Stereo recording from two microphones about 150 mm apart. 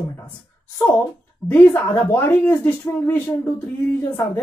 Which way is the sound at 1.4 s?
15° left (ahead or behind).